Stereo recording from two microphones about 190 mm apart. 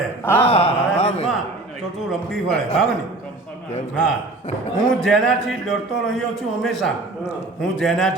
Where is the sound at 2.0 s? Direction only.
Centre (ahead or behind).